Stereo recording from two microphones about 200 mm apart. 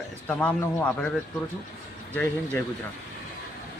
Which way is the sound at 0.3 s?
10° left (ahead or behind).